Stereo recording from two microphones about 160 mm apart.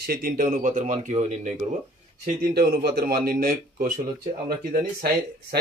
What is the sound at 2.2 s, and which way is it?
Speech, 70° right (ahead or behind).